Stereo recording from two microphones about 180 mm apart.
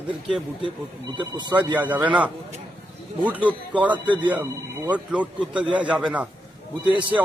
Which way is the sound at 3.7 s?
10° right (ahead or behind).